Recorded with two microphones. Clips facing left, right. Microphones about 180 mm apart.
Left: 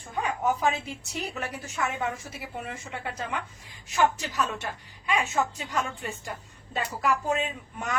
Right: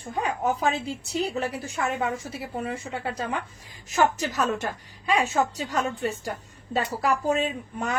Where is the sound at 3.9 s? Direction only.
40° right (ahead or behind).